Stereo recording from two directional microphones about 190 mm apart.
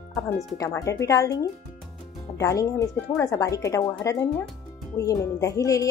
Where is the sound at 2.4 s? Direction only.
15° left (ahead or behind).